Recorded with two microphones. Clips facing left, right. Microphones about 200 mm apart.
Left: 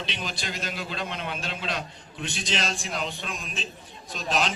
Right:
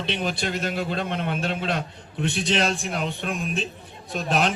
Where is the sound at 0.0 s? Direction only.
60° right (ahead or behind).